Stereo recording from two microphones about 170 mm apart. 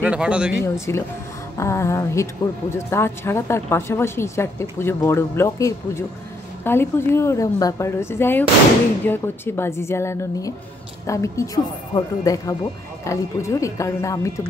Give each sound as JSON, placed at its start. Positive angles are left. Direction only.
{"t": 0.0, "sound": "speech", "side_deg": -5}
{"t": 0.7, "sound": "a woman's voice", "side_deg": 15}